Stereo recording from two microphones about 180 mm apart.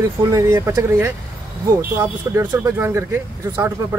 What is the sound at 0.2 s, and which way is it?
Speech, 15° right (ahead or behind).